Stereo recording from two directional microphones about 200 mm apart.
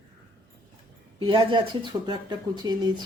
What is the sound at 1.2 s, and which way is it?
Speech, 25° right (ahead or behind).